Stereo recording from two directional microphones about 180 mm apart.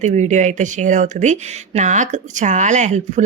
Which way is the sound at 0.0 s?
40° right (ahead or behind).